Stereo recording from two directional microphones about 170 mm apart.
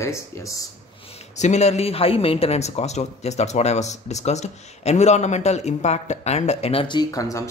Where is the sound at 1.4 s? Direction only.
40° left (ahead or behind).